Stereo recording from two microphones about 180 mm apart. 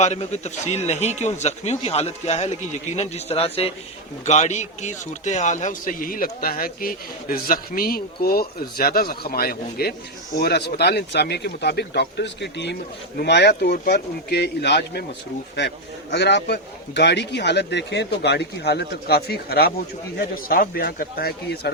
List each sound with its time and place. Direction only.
0.0 s a man's voice: 40° left (ahead or behind); by 15.0 s 65° left (ahead or behind)
16.1 s a man's voice: 70° left (ahead or behind)